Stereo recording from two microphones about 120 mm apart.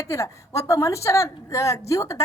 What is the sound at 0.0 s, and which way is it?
A woman's voice, 25° left (ahead or behind).